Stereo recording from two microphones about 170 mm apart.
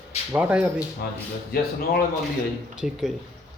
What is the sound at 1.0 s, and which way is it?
Speech, 60° left (ahead or behind).